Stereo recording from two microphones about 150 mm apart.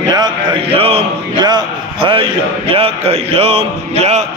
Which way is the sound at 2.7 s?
40° right (ahead or behind).